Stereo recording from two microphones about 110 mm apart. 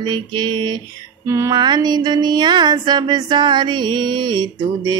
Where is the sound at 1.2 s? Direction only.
25° right (ahead or behind).